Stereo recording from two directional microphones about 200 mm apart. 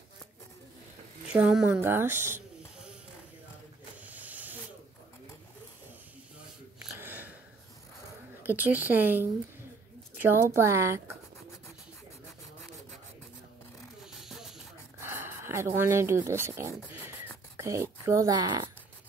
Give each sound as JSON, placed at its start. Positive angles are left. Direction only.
{"t": 1.2, "sound": "speech", "side_deg": -5}
{"t": 4.0, "sound": "snake", "side_deg": -10}
{"t": 7.0, "sound": "a sound", "side_deg": -10}
{"t": 8.4, "sound": "speech", "side_deg": -10}
{"t": 10.5, "sound": "speech", "side_deg": -15}
{"t": 14.2, "sound": "snake", "side_deg": 0}
{"t": 15.0, "sound": "a sound", "side_deg": -10}
{"t": 16.3, "sound": "speech", "side_deg": -15}